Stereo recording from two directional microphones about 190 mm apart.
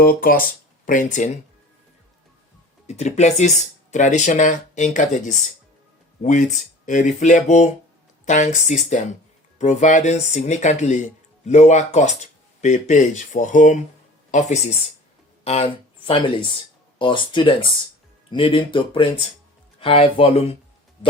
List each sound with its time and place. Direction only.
0.0 s speech: 50° left (ahead or behind)
2.8 s speech: 35° left (ahead or behind)